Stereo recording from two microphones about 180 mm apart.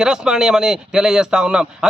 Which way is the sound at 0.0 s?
5° right (ahead or behind).